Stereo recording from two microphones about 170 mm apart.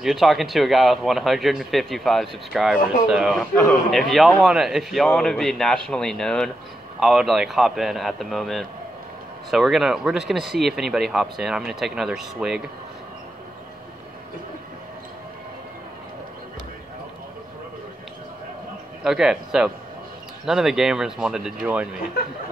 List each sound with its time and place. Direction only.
0.0 s speech: centre (ahead or behind)
19.0 s speech: 5° right (ahead or behind)